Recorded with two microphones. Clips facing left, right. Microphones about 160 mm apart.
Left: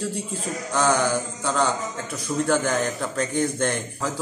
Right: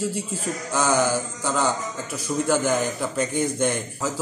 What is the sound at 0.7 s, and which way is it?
A man's voice, 5° right (ahead or behind).